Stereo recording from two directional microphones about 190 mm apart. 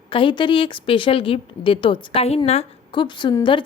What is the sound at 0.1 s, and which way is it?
A woman's voice, 25° left (ahead or behind).